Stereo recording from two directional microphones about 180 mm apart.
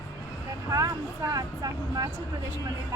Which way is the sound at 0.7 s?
15° right (ahead or behind).